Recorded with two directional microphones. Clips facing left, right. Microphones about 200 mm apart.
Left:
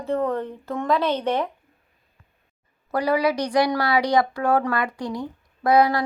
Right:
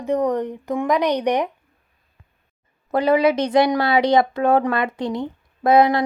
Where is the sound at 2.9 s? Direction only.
20° right (ahead or behind).